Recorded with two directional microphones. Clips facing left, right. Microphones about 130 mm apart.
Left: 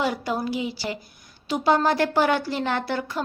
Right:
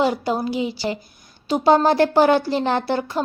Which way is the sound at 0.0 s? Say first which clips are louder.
Right 5 dB; 25° right (ahead or behind).